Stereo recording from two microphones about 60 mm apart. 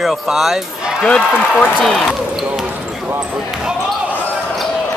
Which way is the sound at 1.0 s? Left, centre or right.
Centre.